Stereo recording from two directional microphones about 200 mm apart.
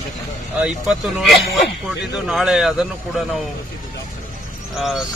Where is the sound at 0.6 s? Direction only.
5° right (ahead or behind).